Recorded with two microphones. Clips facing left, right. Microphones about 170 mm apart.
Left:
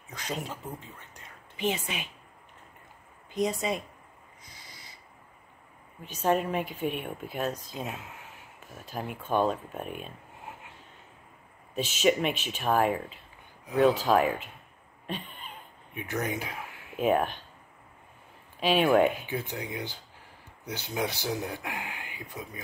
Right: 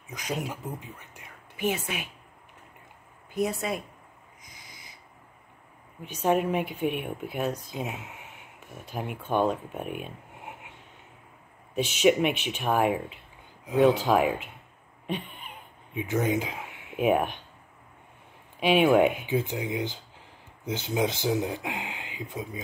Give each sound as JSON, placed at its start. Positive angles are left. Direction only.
{"t": 0.1, "sound": "speech", "side_deg": -10}
{"t": 3.3, "sound": "speech", "side_deg": -5}
{"t": 6.0, "sound": "speech", "side_deg": -10}
{"t": 8.8, "sound": "speech", "side_deg": -10}
{"t": 12.0, "sound": "speech", "side_deg": -10}
{"t": 15.0, "sound": "a sound", "side_deg": -10}
{"t": 17.0, "sound": "speech", "side_deg": -10}
{"t": 18.6, "sound": "speech", "side_deg": -15}